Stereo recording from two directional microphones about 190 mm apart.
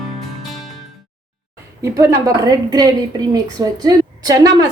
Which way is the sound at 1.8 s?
15° right (ahead or behind).